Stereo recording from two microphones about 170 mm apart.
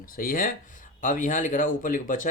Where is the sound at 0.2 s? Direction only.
55° left (ahead or behind).